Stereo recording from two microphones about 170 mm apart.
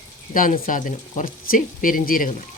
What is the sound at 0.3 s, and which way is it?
Speech, 55° left (ahead or behind).